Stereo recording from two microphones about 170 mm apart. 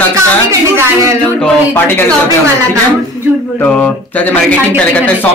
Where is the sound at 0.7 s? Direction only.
20° right (ahead or behind).